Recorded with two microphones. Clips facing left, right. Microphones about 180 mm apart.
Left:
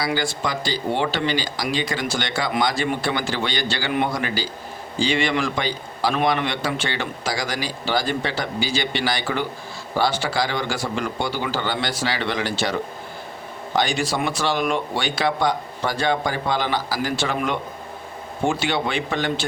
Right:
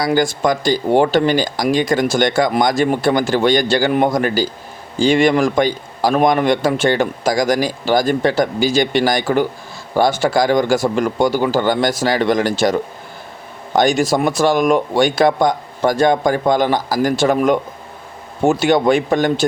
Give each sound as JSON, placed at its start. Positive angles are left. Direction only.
{"t": 0.0, "sound": "a man's voice", "side_deg": -45}
{"t": 13.7, "sound": "a man's voice", "side_deg": -45}